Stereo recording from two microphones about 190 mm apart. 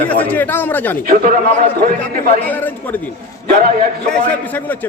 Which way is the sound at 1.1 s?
50° right (ahead or behind).